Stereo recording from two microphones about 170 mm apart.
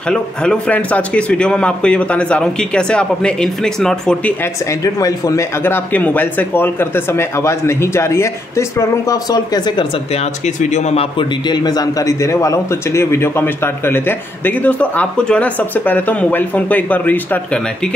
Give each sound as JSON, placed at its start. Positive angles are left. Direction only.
{"t": 0.1, "sound": "a man's voice", "side_deg": 5}
{"t": 4.8, "sound": "a man's voice", "side_deg": 20}
{"t": 10.1, "sound": "a man's voice", "side_deg": 45}